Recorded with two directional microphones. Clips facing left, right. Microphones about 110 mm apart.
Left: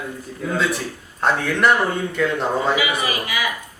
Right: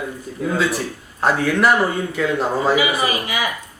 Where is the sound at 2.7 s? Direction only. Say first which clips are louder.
Right 3 dB; 30° right (ahead or behind).